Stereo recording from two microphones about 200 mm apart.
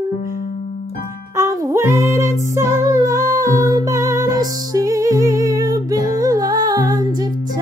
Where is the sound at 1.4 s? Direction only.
15° right (ahead or behind).